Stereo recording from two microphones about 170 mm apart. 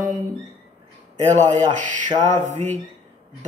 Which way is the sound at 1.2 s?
45° right (ahead or behind).